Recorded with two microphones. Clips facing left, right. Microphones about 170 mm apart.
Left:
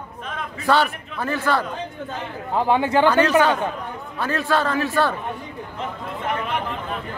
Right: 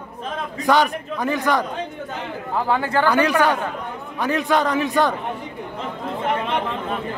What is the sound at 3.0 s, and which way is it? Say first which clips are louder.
A man's voice: even; 10° right (ahead or behind).